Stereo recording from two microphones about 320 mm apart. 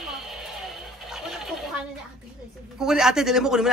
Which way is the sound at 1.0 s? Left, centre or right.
Centre.